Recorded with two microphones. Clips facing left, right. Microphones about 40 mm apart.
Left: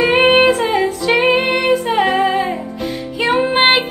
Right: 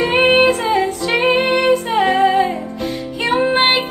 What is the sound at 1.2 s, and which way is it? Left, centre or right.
Music, centre.